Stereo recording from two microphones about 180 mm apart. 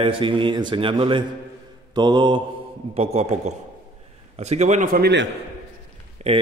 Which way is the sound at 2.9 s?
35° right (ahead or behind).